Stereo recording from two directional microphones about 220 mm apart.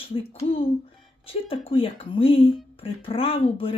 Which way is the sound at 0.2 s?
25° left (ahead or behind).